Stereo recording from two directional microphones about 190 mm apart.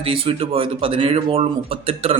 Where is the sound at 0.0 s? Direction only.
30° right (ahead or behind).